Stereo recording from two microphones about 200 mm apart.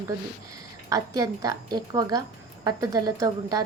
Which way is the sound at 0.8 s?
15° right (ahead or behind).